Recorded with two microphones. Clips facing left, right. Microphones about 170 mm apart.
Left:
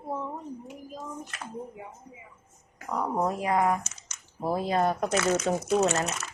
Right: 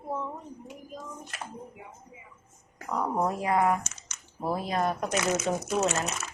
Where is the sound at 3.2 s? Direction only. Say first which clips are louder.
Even; 20° left (ahead or behind).